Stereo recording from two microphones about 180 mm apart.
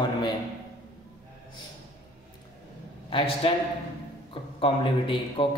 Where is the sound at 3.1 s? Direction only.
30° left (ahead or behind).